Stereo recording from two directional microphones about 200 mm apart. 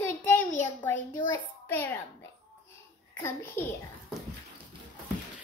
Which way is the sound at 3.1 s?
10° left (ahead or behind).